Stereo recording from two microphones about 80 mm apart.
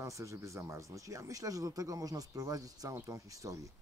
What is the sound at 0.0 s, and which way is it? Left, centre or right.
Speech, right.